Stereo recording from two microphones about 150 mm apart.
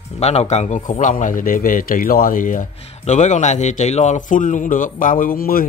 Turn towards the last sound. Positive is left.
turn(degrees=75)  # may be behind; listen again after turning